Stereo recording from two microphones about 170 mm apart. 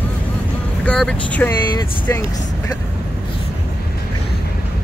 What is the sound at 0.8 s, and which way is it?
Speech, 5° left (ahead or behind).